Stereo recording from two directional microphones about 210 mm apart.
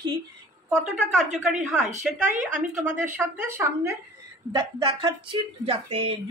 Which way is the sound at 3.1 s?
10° right (ahead or behind).